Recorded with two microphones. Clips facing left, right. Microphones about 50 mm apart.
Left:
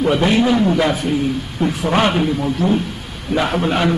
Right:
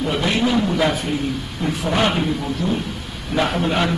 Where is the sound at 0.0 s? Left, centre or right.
Left.